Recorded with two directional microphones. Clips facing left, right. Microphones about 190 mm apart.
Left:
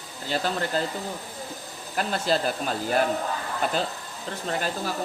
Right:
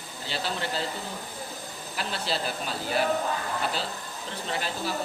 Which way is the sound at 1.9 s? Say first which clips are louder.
Left 7 dB; 45° left (ahead or behind).